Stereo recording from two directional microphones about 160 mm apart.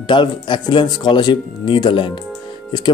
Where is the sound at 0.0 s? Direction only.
30° left (ahead or behind).